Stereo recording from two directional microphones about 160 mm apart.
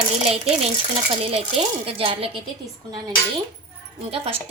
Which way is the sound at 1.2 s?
40° right (ahead or behind).